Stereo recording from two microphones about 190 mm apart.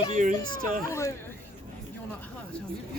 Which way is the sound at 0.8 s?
15° left (ahead or behind).